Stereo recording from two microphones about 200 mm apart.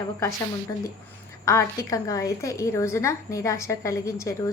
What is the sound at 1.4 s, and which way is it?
A woman's voice, 15° left (ahead or behind).